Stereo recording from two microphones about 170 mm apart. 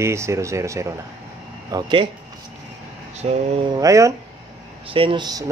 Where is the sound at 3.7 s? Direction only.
20° right (ahead or behind).